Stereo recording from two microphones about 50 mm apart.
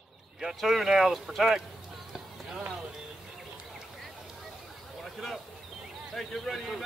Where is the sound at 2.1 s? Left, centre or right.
Centre.